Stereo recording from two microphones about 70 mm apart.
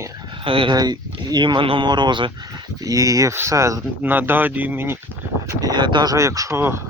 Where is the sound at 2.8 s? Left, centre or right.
Right.